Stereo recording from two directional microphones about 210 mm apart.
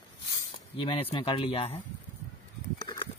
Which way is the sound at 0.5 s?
25° left (ahead or behind).